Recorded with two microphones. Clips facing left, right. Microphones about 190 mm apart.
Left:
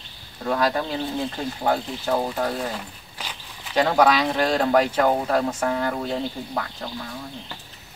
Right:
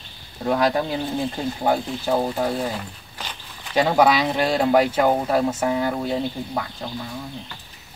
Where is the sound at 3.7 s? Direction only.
10° right (ahead or behind).